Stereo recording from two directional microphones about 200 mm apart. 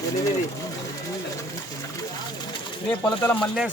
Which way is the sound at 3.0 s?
10° left (ahead or behind).